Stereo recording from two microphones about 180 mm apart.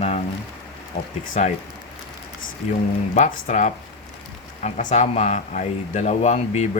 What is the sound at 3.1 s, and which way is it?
Speech, 45° left (ahead or behind).